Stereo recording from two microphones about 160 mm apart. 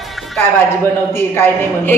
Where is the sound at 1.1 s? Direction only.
15° left (ahead or behind).